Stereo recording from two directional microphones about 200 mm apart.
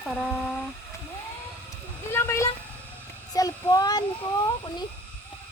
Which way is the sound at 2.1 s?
10° left (ahead or behind).